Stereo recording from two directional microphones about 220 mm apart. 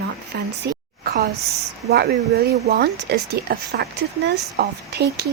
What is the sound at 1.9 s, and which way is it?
Speech, 45° right (ahead or behind).